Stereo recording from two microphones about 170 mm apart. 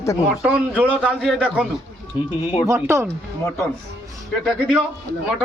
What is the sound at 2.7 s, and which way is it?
Speech, 15° right (ahead or behind).